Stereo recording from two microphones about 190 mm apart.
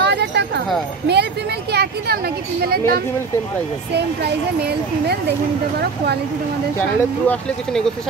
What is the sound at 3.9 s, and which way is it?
Speech, 60° right (ahead or behind).